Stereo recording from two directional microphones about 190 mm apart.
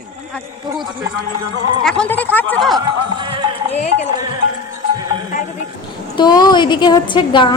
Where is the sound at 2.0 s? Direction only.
10° left (ahead or behind).